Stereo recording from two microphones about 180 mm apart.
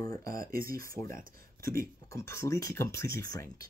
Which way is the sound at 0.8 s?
15° left (ahead or behind).